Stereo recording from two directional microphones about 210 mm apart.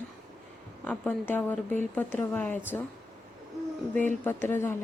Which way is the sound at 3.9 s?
10° left (ahead or behind).